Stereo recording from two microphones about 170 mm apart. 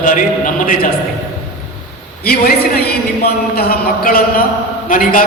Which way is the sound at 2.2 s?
65° left (ahead or behind).